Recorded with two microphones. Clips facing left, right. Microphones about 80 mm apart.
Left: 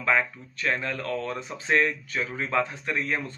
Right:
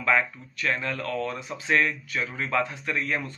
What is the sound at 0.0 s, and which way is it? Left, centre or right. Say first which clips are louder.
Speech: right 1 dB; left.